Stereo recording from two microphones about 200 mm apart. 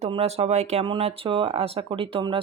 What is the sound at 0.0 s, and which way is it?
Speech, 30° right (ahead or behind).